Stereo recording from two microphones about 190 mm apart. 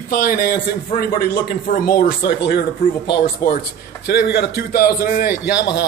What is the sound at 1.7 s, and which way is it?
Speech, 45° left (ahead or behind).